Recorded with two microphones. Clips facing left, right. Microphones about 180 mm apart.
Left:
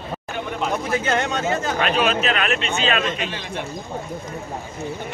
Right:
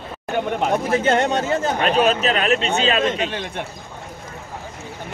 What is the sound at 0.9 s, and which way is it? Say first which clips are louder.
Speech: right 5 dB; 30° right (ahead or behind).